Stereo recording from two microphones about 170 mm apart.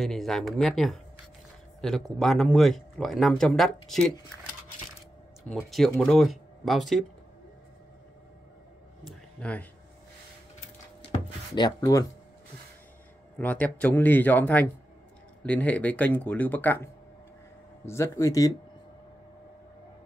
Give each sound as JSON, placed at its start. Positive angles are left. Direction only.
{"t": 0.0, "sound": "speech", "side_deg": 0}
{"t": 5.7, "sound": "speech", "side_deg": 0}
{"t": 9.0, "sound": "a sound", "side_deg": 5}
{"t": 11.1, "sound": "music", "side_deg": 25}
{"t": 13.4, "sound": "speech", "side_deg": 10}